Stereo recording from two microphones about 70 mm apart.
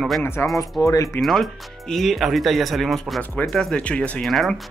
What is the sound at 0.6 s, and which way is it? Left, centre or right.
Speech, left.